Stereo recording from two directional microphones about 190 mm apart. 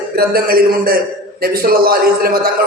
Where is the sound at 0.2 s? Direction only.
50° right (ahead or behind).